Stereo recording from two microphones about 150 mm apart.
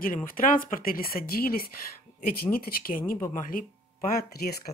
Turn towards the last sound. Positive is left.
turn(degrees=90)